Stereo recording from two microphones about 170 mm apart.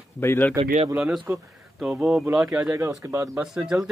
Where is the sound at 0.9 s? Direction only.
5° right (ahead or behind).